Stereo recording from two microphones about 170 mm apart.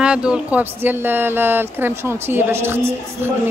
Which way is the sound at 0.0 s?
5° right (ahead or behind).